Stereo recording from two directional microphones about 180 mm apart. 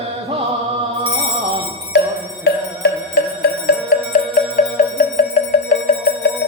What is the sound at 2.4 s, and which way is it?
Music, 65° left (ahead or behind).